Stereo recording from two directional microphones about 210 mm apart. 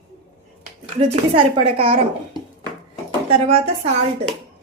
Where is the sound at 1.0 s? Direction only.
30° right (ahead or behind).